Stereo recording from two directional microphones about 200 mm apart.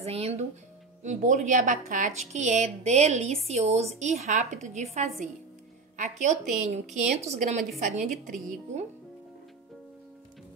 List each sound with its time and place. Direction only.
0.0 s a woman's voice: 30° right (ahead or behind)